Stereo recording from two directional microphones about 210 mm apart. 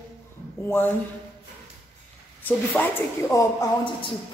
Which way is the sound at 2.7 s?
10° left (ahead or behind).